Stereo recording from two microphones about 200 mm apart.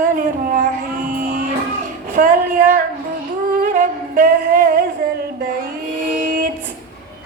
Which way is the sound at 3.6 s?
40° right (ahead or behind).